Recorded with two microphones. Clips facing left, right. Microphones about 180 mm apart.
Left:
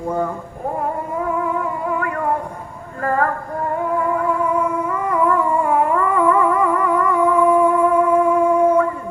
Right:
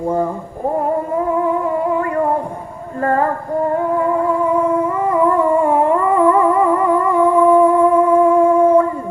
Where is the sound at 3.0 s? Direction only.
25° right (ahead or behind).